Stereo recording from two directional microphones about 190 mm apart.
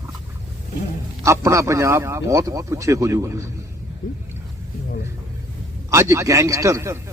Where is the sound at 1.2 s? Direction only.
15° right (ahead or behind).